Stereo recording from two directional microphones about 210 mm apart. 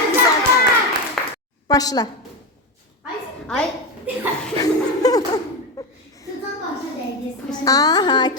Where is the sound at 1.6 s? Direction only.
15° left (ahead or behind).